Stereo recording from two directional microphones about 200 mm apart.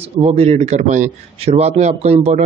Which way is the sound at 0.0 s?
30° right (ahead or behind).